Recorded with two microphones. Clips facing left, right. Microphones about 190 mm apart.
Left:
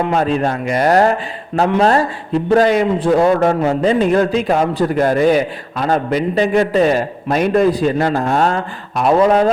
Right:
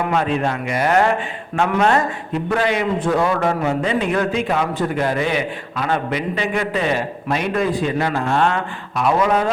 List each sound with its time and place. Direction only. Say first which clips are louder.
0.1 s a man's voice: left 3 dB; 40° left (ahead or behind)